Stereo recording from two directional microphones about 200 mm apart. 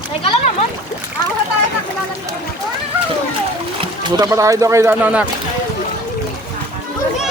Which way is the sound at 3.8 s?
20° right (ahead or behind).